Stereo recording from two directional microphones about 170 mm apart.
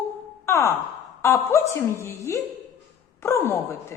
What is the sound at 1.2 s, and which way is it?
A woman's voice, 15° left (ahead or behind).